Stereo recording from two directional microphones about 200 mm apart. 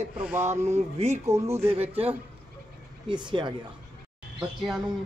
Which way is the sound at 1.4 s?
15° right (ahead or behind).